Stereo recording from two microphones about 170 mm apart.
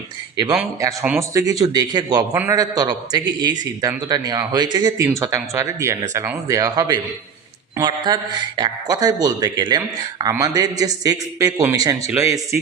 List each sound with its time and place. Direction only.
0.5 s a man's voice: 15° right (ahead or behind)